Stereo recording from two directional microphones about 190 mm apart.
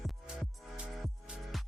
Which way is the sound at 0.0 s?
Centre (ahead or behind).